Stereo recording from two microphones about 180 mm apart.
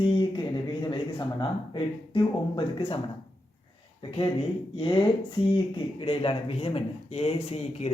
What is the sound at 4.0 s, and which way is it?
Speech, 30° left (ahead or behind).